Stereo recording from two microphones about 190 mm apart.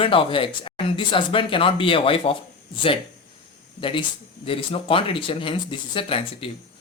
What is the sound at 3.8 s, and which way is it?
Speech, 25° left (ahead or behind).